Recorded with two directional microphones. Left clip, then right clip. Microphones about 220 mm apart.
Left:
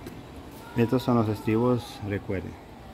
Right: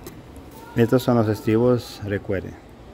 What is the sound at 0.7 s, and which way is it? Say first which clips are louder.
Speech: right 6 dB; 15° right (ahead or behind).